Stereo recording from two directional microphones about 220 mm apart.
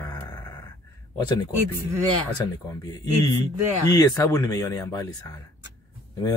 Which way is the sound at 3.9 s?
15° left (ahead or behind).